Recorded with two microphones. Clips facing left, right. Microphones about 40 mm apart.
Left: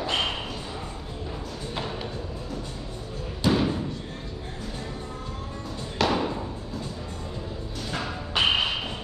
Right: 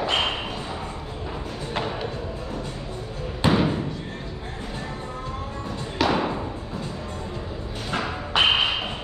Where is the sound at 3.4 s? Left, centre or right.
Right.